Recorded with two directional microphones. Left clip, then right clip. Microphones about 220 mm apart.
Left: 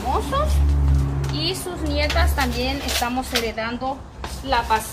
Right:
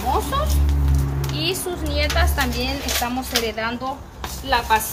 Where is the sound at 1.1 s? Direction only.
15° right (ahead or behind).